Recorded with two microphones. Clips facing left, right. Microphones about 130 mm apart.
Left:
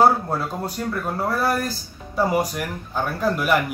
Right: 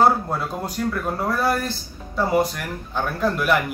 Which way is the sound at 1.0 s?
5° left (ahead or behind).